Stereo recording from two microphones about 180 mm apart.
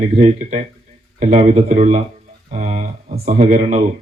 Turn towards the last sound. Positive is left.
turn(degrees=-40)  # may be behind; listen again after turning